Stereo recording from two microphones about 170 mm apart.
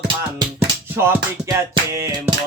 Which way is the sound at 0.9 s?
15° right (ahead or behind).